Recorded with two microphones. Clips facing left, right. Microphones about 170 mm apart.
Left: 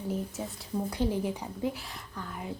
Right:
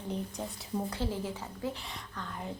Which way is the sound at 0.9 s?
15° left (ahead or behind).